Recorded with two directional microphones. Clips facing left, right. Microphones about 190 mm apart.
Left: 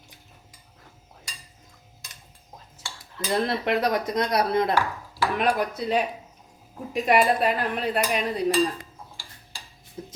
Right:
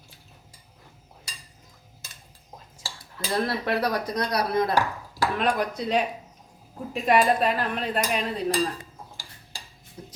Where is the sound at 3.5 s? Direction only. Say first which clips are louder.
Left 2 dB; 20° left (ahead or behind).